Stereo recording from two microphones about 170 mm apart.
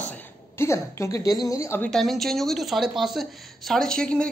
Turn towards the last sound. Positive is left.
turn(degrees=5)  # may be behind; listen again after turning